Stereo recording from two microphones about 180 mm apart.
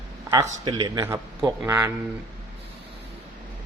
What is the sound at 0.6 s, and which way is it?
A man's voice, 25° right (ahead or behind).